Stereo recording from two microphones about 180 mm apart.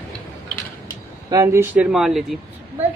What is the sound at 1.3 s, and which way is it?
Speech, 15° right (ahead or behind).